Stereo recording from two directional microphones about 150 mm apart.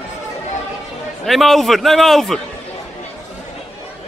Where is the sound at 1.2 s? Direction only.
Centre (ahead or behind).